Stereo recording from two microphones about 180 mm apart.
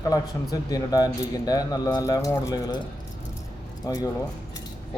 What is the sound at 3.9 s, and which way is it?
Speech, 20° left (ahead or behind).